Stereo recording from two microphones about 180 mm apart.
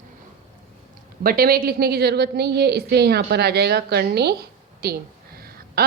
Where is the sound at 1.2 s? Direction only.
55° right (ahead or behind).